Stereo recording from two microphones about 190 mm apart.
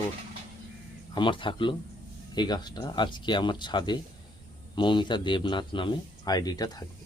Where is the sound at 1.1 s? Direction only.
25° left (ahead or behind).